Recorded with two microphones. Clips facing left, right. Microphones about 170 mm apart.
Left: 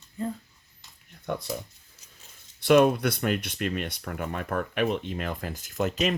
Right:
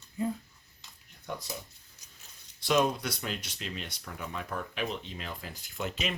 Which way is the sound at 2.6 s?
60° left (ahead or behind).